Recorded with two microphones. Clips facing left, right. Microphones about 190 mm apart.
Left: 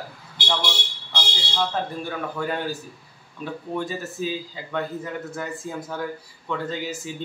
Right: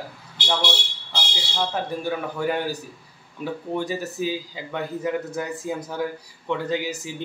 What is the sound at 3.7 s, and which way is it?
A man's voice, 15° right (ahead or behind).